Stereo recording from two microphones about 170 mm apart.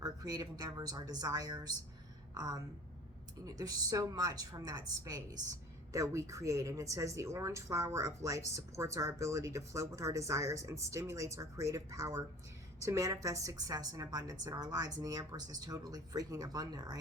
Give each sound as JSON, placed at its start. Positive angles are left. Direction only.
{"t": 0.0, "sound": "a woman's voice", "side_deg": -20}